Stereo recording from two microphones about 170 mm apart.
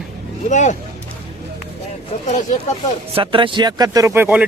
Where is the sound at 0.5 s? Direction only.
45° left (ahead or behind).